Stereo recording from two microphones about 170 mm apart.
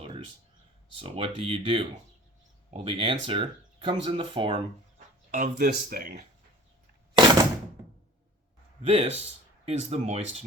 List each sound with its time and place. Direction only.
0.9 s speech: 35° right (ahead or behind)
5.3 s speech: 50° right (ahead or behind)
8.9 s speech: 35° right (ahead or behind)